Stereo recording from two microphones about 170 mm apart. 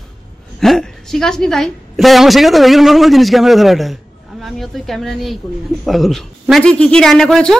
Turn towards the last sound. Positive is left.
turn(degrees=5)  # may be behind; listen again after turning